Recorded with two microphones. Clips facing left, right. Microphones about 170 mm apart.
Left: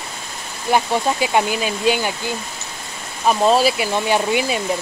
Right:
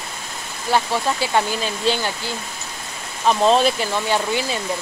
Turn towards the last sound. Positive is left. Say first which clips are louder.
# left 3 dB
turn(degrees=15)  # may be behind; listen again after turning